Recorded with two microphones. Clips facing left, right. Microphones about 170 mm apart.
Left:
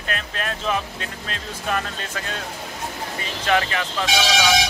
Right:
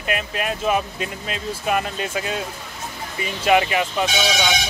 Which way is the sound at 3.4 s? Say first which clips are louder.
Right 4 dB; 10° right (ahead or behind).